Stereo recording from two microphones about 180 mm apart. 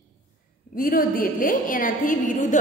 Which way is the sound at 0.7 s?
50° left (ahead or behind).